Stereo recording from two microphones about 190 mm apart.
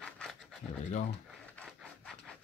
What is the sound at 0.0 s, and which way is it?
Pant, 5° left (ahead or behind).